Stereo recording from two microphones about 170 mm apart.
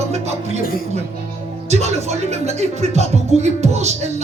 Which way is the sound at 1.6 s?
40° right (ahead or behind).